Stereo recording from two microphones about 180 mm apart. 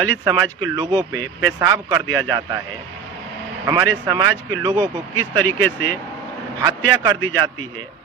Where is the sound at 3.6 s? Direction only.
25° right (ahead or behind).